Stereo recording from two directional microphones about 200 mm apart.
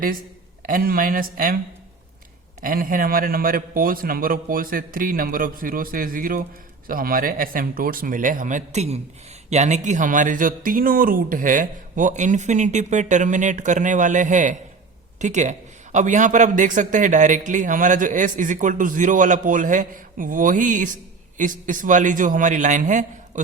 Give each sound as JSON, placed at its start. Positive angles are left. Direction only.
{"t": 0.6, "sound": "a man's voice", "side_deg": -45}
{"t": 2.6, "sound": "a man's voice", "side_deg": -45}